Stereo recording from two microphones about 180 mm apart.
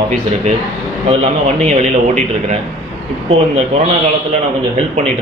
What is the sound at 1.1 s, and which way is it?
A man's voice, 40° right (ahead or behind).